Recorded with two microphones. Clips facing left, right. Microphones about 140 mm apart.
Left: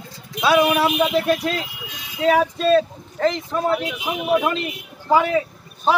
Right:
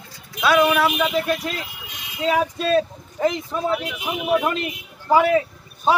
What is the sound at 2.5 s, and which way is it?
A man's voice, 5° right (ahead or behind).